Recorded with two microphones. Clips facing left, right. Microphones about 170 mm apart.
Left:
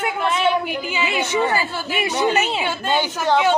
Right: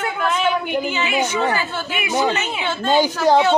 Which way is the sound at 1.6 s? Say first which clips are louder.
Left 1 dB; 35° left (ahead or behind).